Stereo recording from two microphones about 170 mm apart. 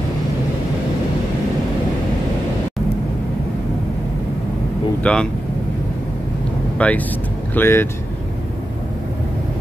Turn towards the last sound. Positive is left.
turn(degrees=15)  # may be behind; listen again after turning